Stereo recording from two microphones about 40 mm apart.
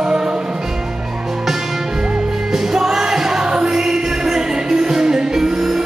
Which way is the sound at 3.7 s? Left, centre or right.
Centre.